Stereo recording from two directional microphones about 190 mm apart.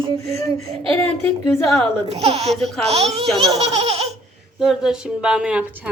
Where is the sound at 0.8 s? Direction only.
5° left (ahead or behind).